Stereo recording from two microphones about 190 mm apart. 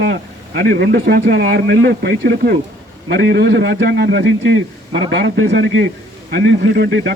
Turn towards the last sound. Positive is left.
turn(degrees=-60)  # may be behind; listen again after turning